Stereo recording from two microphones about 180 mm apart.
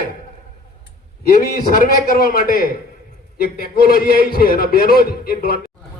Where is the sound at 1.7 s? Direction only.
55° left (ahead or behind).